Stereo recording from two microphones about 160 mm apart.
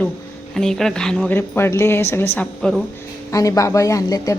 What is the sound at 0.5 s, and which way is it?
A woman's voice, 5° left (ahead or behind).